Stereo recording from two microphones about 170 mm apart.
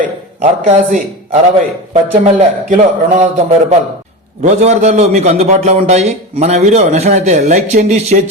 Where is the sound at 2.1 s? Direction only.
45° right (ahead or behind).